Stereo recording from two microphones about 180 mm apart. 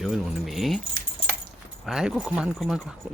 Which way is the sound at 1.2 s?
30° left (ahead or behind).